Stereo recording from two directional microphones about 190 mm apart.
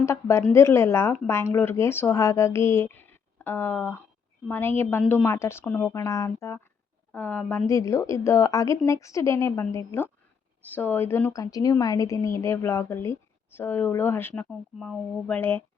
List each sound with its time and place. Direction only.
0.0 s a woman's voice: 15° left (ahead or behind)